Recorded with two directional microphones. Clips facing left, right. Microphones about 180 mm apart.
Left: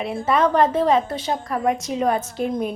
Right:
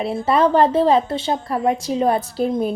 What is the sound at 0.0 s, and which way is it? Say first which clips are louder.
A woman's voice: right 3 dB; 30° right (ahead or behind).